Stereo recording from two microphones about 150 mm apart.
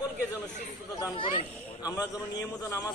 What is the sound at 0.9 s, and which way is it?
A man's voice, 30° left (ahead or behind).